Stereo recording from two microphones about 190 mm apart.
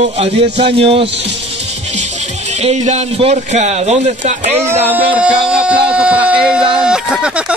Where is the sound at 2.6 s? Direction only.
35° right (ahead or behind).